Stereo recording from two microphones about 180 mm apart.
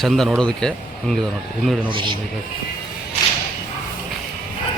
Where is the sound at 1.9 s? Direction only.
30° right (ahead or behind).